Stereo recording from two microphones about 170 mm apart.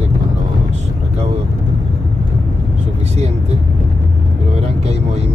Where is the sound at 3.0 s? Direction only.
40° right (ahead or behind).